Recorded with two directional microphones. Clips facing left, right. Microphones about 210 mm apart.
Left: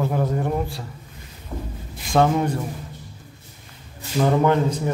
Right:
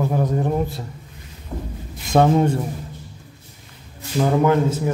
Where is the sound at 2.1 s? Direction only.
25° right (ahead or behind).